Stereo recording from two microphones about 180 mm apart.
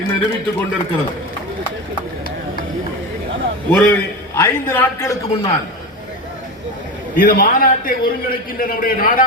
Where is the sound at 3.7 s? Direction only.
10° left (ahead or behind).